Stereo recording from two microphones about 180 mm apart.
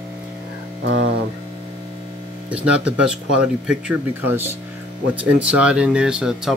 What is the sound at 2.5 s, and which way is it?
Speech, 5° right (ahead or behind).